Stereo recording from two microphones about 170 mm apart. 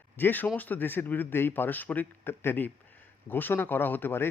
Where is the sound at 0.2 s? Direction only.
10° left (ahead or behind).